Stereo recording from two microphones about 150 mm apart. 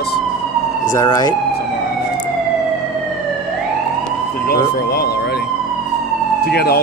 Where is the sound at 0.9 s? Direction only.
25° left (ahead or behind).